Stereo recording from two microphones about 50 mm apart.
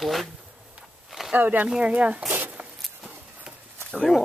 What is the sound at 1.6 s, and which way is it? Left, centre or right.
Speech, centre.